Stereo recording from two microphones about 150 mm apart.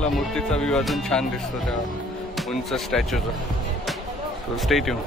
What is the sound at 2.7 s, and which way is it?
Speech, centre (ahead or behind).